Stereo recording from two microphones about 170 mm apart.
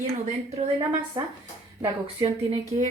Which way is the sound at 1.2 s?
20° right (ahead or behind).